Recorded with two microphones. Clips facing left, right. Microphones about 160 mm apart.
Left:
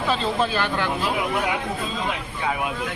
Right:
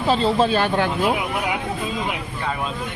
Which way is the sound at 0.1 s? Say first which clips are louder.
Right 6 dB; 35° right (ahead or behind).